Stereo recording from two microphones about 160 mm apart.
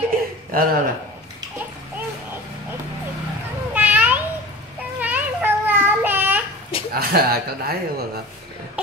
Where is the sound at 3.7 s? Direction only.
10° right (ahead or behind).